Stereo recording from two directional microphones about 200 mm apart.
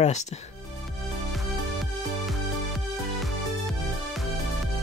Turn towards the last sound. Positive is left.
turn(degrees=0)  # may be behind; listen again after turning